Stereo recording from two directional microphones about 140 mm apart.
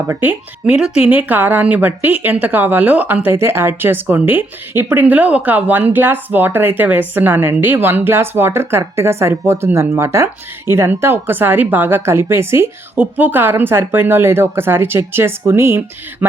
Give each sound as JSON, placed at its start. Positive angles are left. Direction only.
{"t": 0.1, "sound": "speech", "side_deg": -10}